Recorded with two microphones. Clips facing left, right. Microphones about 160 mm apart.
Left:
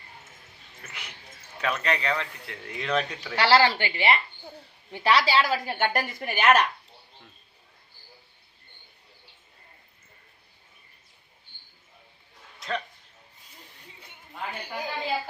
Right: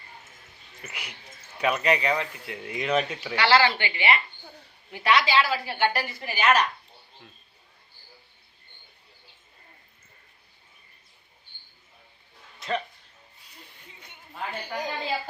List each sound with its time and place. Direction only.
0.8 s speech: 10° right (ahead or behind)
3.3 s a woman's voice: 40° left (ahead or behind)
12.5 s a sound: 5° right (ahead or behind)
14.3 s a woman's voice: 5° left (ahead or behind)